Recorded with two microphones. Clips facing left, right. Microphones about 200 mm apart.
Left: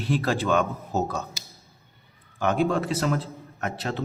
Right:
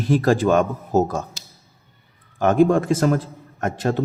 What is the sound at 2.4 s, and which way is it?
Speech, 45° right (ahead or behind).